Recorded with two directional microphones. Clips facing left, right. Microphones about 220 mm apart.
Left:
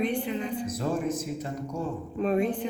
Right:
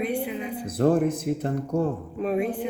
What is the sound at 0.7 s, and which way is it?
Speech, 55° right (ahead or behind).